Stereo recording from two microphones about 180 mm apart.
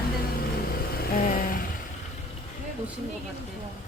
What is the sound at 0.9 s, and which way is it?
Vehicle, 55° left (ahead or behind).